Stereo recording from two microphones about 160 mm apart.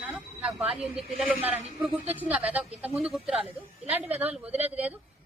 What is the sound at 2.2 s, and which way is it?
A woman's voice, 10° right (ahead or behind).